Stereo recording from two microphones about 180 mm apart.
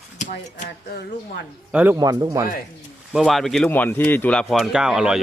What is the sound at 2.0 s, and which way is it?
Speech, 20° right (ahead or behind).